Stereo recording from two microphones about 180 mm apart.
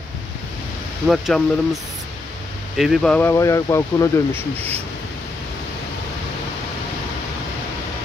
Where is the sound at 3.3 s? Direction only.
15° left (ahead or behind).